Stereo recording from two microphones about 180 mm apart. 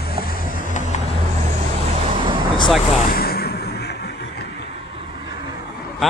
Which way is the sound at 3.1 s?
55° left (ahead or behind).